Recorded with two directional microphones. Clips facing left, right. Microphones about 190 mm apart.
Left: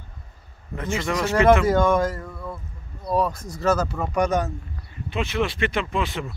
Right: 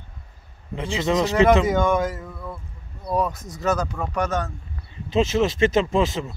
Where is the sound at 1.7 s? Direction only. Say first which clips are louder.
Left 1 dB; centre (ahead or behind); by 4.5 s 15° left (ahead or behind).